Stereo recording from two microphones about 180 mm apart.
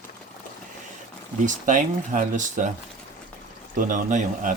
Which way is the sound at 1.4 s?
45° right (ahead or behind).